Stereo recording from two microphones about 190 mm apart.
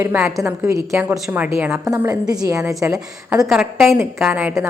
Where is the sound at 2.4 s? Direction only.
15° right (ahead or behind).